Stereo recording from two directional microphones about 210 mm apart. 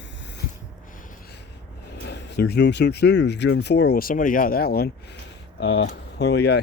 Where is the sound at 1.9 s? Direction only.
55° left (ahead or behind).